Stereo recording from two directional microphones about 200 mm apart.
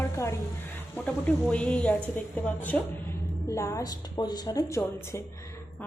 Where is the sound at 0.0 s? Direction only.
15° left (ahead or behind).